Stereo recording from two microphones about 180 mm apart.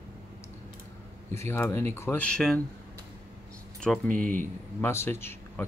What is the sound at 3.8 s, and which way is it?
Speech, 5° left (ahead or behind).